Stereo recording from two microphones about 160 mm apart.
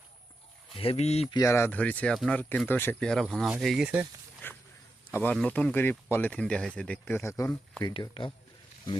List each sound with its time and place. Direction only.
0.8 s speech: 40° left (ahead or behind)
1.3 s speech: 20° left (ahead or behind); by 4.0 s 5° right (ahead or behind)
5.1 s speech: 10° left (ahead or behind)
7.9 s speech: 30° left (ahead or behind)